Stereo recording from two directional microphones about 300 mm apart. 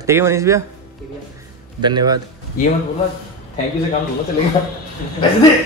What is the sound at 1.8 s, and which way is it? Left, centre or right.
Speech, centre.